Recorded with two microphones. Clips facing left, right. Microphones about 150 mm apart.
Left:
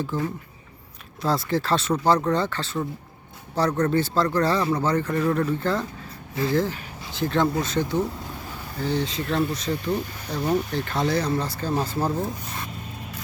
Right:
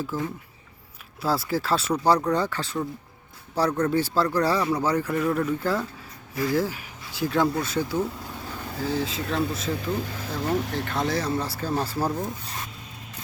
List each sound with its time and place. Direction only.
0.0 s speech: centre (ahead or behind)